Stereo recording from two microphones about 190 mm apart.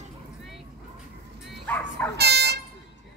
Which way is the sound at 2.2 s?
60° right (ahead or behind).